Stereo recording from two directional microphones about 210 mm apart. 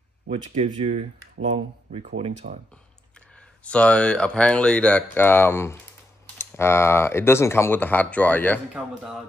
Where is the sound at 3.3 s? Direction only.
5° left (ahead or behind).